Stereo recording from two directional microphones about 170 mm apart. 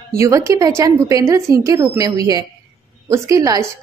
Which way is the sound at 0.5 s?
20° right (ahead or behind).